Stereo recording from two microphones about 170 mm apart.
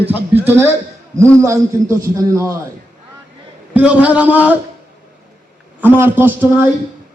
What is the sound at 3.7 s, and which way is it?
Speech, 10° right (ahead or behind).